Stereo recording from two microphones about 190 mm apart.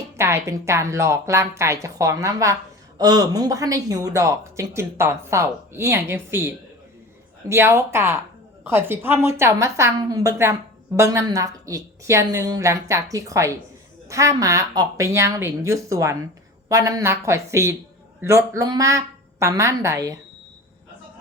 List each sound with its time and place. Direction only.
0.2 s speech: 15° right (ahead or behind)